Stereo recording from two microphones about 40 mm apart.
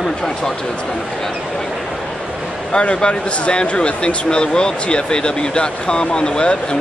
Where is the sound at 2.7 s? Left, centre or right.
Left.